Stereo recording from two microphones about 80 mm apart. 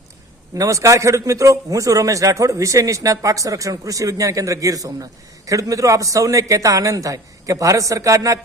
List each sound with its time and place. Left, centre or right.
0.5 s a man's voice: right